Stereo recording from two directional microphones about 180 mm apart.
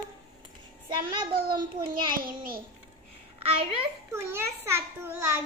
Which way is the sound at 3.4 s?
30° right (ahead or behind).